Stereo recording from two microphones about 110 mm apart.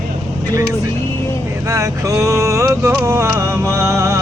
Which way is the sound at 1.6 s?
30° right (ahead or behind).